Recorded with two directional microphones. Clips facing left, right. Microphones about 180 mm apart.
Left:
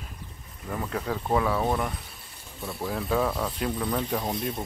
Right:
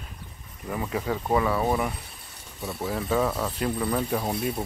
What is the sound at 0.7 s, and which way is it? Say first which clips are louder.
Speech: right 2 dB; 5° right (ahead or behind).